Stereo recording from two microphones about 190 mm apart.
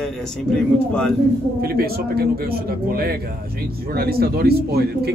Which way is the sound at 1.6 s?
55° right (ahead or behind).